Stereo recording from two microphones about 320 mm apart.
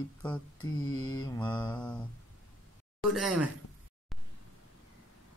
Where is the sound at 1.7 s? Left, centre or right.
Centre.